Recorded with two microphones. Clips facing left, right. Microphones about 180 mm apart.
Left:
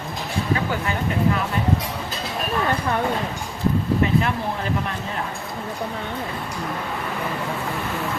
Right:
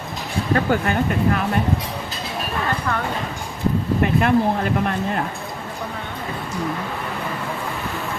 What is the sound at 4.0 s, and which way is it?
Speech, 55° right (ahead or behind).